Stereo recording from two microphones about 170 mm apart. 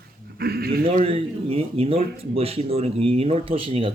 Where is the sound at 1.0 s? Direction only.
35° right (ahead or behind).